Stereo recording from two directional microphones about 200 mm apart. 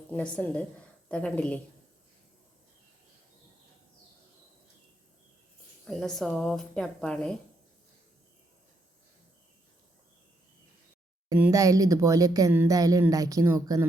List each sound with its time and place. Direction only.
0.1 s speech: 5° left (ahead or behind)
5.8 s speech: centre (ahead or behind)
11.3 s speech: 10° right (ahead or behind)